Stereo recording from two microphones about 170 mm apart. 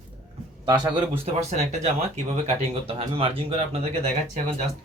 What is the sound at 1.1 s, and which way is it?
Speech, 35° right (ahead or behind).